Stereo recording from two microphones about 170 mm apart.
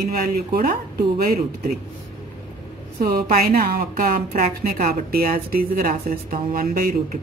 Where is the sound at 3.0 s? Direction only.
60° right (ahead or behind).